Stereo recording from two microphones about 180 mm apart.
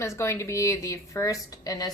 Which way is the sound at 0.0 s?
15° left (ahead or behind).